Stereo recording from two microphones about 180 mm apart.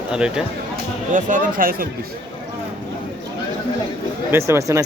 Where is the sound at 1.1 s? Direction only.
45° right (ahead or behind).